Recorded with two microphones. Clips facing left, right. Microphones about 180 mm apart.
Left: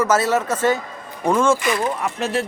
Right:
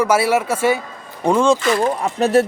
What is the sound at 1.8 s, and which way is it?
Speech, 35° right (ahead or behind).